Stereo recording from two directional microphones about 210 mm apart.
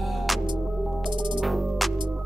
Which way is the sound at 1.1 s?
20° right (ahead or behind).